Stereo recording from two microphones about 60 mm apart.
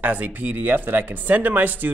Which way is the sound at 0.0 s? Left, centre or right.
Right.